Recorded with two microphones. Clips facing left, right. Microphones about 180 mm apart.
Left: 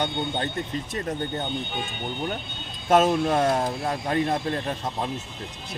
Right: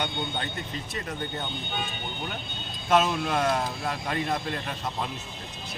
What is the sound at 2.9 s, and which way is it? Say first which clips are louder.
A man's voice: left 4 dB; 45° left (ahead or behind).